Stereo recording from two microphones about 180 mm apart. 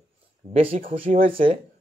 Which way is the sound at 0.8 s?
30° right (ahead or behind).